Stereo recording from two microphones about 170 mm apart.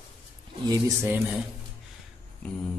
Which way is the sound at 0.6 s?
20° right (ahead or behind).